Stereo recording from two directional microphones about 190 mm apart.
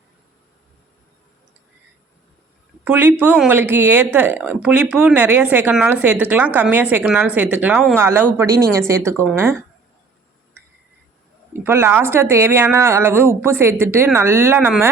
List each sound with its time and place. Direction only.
2.8 s a woman's voice: 10° right (ahead or behind)
11.5 s a woman's voice: 15° right (ahead or behind)